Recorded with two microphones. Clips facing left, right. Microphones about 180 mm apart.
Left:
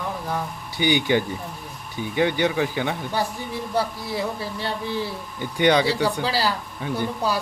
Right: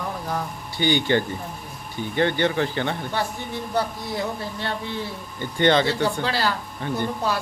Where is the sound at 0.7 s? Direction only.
15° left (ahead or behind).